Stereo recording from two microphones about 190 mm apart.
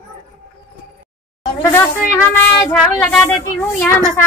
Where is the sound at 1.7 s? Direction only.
15° left (ahead or behind).